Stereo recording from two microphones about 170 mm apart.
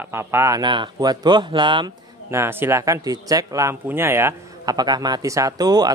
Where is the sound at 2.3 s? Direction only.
15° right (ahead or behind).